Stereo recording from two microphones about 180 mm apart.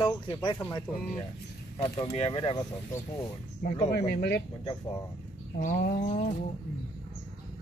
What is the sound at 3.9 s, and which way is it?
Speech, 60° left (ahead or behind).